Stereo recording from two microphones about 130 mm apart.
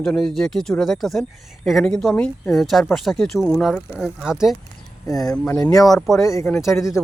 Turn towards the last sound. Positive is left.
turn(degrees=20)  # may be behind; listen again after turning